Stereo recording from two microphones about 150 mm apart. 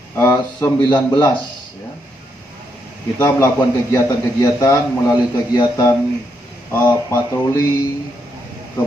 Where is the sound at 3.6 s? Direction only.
25° left (ahead or behind).